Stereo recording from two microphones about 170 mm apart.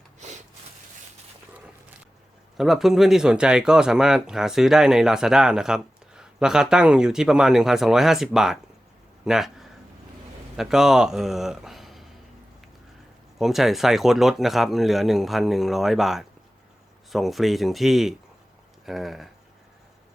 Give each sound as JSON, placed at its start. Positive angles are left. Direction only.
{"t": 2.6, "sound": "a man's voice", "side_deg": 0}
{"t": 13.4, "sound": "speech", "side_deg": 0}